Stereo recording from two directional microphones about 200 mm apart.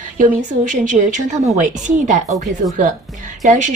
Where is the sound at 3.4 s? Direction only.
40° right (ahead or behind).